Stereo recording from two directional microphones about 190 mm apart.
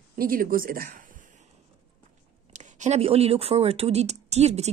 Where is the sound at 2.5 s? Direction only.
40° right (ahead or behind).